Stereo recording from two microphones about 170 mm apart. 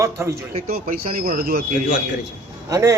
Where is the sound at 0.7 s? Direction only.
60° right (ahead or behind).